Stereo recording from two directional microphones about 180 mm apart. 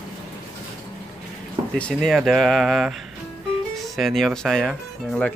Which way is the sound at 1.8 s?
5° left (ahead or behind).